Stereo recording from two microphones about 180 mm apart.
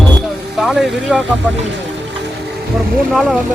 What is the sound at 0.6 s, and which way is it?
Speech, centre (ahead or behind).